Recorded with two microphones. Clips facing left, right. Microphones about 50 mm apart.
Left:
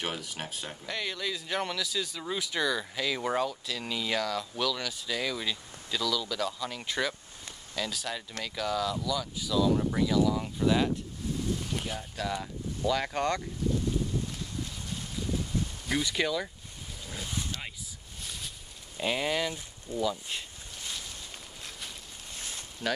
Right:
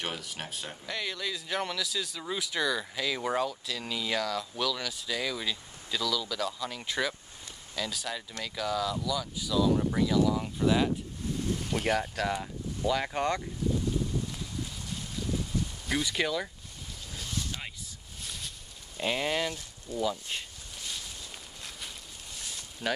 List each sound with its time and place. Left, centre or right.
0.0 s speech: centre
11.8 s speech: right
12.4 s speech: centre
15.9 s speech: centre
17.1 s a sound: left
18.2 s a sound: centre
18.9 s speech: centre
22.8 s speech: centre